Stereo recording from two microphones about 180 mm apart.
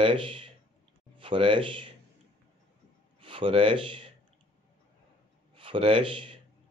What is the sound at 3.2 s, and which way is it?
Speech, 30° right (ahead or behind).